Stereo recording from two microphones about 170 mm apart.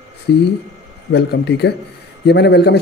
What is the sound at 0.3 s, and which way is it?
A man's voice, 75° left (ahead or behind).